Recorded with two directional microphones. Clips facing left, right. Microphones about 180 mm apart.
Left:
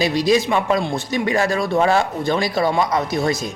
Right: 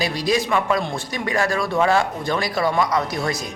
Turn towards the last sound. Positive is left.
turn(degrees=25)  # may be behind; listen again after turning